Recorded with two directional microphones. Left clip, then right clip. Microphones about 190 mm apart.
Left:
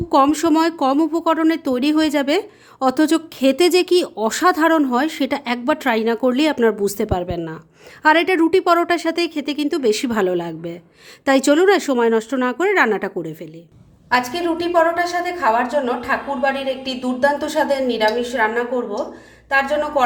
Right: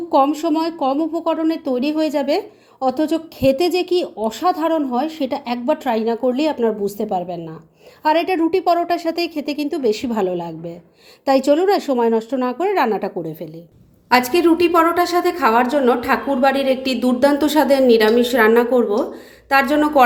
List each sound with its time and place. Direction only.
0.1 s speech: 25° left (ahead or behind)
14.1 s a woman's voice: 40° right (ahead or behind)